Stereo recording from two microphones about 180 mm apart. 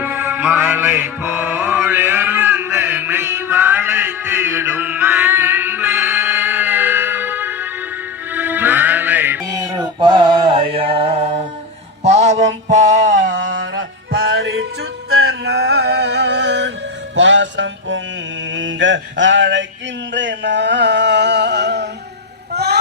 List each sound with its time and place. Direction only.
0.0 s music: 10° right (ahead or behind)
9.7 s mantra: 25° right (ahead or behind)
12.1 s music: 40° right (ahead or behind)
12.6 s male singing: 45° right (ahead or behind)
13.3 s music: 90° right
17.2 s music: 90° right
18.5 s mantra: 90° right
20.1 s a sound: 80° right